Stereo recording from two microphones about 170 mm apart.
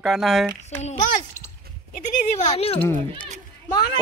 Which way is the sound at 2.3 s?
40° left (ahead or behind).